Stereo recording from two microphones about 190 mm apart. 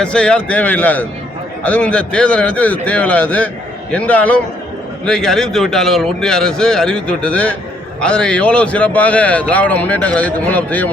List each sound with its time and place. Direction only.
0.0 s a man's voice: 5° left (ahead or behind)